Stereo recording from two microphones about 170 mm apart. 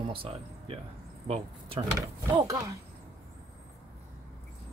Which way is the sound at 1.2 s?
35° right (ahead or behind).